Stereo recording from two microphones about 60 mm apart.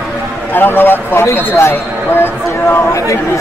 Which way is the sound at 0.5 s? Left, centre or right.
Left.